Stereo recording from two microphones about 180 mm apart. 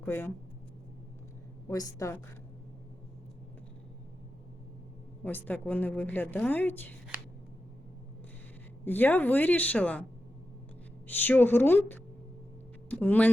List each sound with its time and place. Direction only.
0.0 s speech: 10° left (ahead or behind)
1.6 s a woman's voice: 20° left (ahead or behind)
5.2 s a woman's voice: 10° left (ahead or behind)
8.8 s a woman's voice: 10° left (ahead or behind)
11.1 s a woman's voice: 10° left (ahead or behind)